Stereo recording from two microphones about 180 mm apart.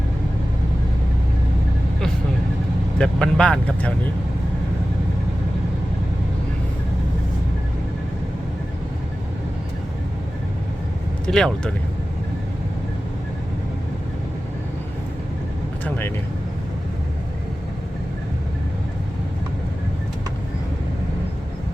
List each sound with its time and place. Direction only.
3.0 s speech: 5° left (ahead or behind)
11.3 s speech: 5° left (ahead or behind)
15.8 s speech: 10° left (ahead or behind)